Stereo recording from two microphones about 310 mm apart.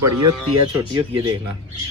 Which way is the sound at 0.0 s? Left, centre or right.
Right.